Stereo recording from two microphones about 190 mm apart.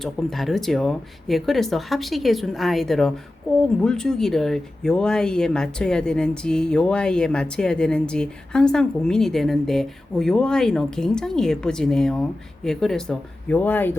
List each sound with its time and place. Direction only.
0.0 s speech: centre (ahead or behind)